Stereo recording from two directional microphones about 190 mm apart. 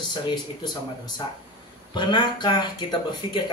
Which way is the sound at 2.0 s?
25° left (ahead or behind).